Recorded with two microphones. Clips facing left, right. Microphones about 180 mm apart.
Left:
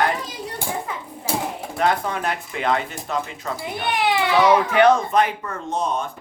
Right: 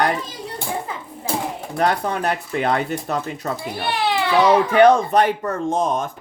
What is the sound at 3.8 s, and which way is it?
Speech, 15° left (ahead or behind).